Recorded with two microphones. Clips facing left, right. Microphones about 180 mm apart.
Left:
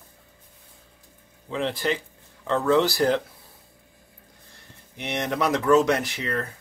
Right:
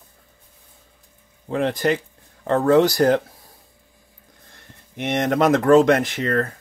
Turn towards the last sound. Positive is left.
turn(degrees=-50)  # may be behind; listen again after turning